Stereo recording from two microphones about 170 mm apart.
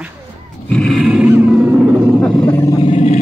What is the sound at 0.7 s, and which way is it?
Roar, 5° left (ahead or behind).